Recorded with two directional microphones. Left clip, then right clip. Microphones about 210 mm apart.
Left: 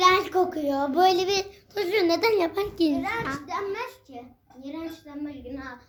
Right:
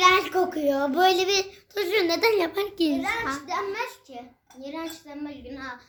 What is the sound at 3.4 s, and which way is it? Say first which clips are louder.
A child's voice: right 2 dB; 5° right (ahead or behind).